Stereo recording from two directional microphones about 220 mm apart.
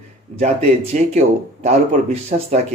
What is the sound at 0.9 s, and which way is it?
Speech, 35° right (ahead or behind).